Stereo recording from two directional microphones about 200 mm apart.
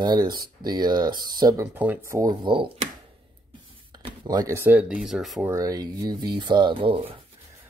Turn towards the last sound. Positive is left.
turn(degrees=-25)  # may be behind; listen again after turning